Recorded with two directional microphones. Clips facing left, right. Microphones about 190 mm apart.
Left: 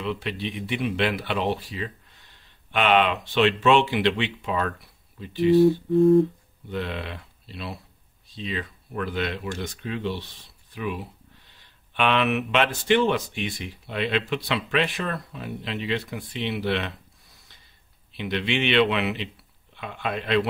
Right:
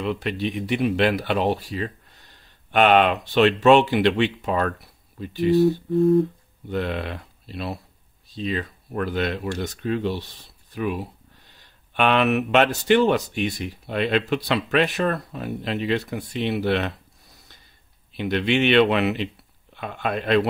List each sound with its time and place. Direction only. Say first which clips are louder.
0.0 s speech: right 4 dB; 45° right (ahead or behind)
6.7 s speech: right 4 dB; 50° right (ahead or behind)
18.1 s speech: right 5 dB; 45° right (ahead or behind)